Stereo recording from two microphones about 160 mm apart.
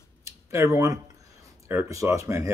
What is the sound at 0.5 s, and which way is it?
Speech, 15° right (ahead or behind).